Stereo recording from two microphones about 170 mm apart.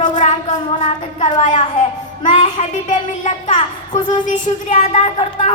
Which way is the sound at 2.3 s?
35° left (ahead or behind).